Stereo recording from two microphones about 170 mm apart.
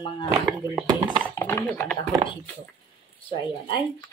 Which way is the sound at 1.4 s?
15° left (ahead or behind).